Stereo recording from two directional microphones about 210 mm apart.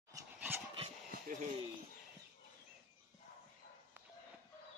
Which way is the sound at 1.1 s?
45° right (ahead or behind).